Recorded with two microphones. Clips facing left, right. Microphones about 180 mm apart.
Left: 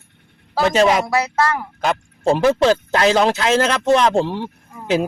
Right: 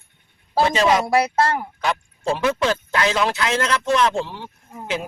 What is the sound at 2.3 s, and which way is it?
Speech, 35° left (ahead or behind).